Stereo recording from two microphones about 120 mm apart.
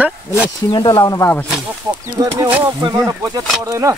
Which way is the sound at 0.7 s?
40° left (ahead or behind).